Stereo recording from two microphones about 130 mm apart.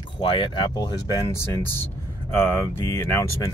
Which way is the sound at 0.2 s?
40° left (ahead or behind).